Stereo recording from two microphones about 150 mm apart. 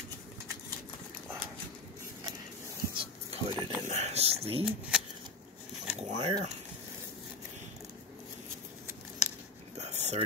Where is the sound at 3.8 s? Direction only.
50° right (ahead or behind).